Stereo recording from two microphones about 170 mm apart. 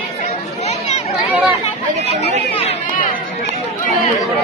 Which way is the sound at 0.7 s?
40° left (ahead or behind).